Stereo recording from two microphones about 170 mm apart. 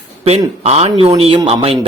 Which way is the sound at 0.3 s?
40° right (ahead or behind).